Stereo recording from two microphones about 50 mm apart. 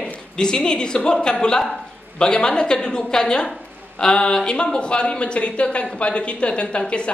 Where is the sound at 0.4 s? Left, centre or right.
Centre.